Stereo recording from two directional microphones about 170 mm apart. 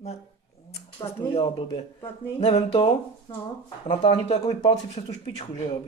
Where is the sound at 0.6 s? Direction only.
35° left (ahead or behind).